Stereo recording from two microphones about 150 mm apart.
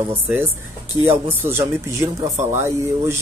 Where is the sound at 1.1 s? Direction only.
15° right (ahead or behind).